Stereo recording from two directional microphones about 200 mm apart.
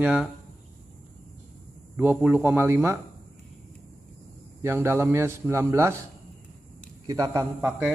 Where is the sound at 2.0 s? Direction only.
10° right (ahead or behind).